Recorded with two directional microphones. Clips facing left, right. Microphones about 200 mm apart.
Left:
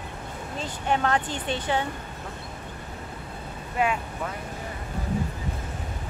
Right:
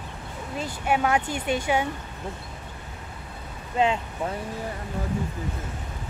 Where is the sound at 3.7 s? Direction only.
25° right (ahead or behind).